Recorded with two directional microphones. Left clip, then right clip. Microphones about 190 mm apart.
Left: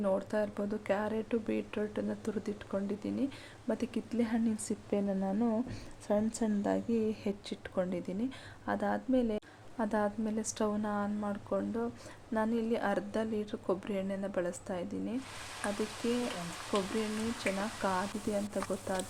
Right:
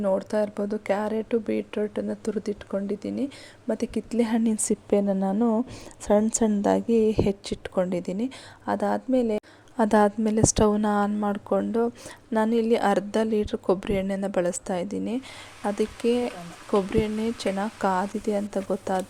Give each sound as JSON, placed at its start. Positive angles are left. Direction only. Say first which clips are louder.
{"t": 0.0, "sound": "speech", "louder": "right 8 dB", "side_deg": -35}
{"t": 9.7, "sound": "a woman's voice", "louder": "right 12 dB", "side_deg": -50}
{"t": 17.4, "sound": "a woman's voice", "louder": "right 8 dB", "side_deg": -45}